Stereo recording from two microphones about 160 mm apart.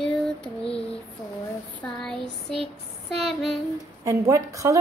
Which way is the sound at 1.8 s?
5° left (ahead or behind).